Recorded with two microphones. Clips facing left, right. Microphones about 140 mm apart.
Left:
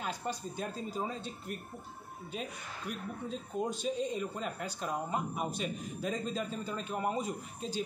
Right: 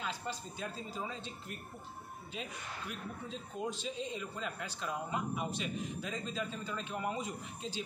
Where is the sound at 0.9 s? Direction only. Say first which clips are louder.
Left 4 dB; 40° left (ahead or behind).